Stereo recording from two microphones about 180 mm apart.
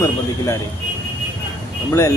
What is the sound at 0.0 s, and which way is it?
Speech, 15° left (ahead or behind).